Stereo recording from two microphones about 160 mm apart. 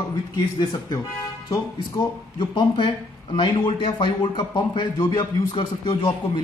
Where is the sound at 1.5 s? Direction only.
25° left (ahead or behind).